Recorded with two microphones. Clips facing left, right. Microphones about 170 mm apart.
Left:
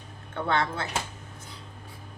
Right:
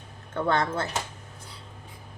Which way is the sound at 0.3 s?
45° right (ahead or behind).